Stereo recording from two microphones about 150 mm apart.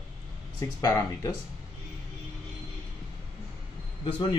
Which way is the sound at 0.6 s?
25° left (ahead or behind).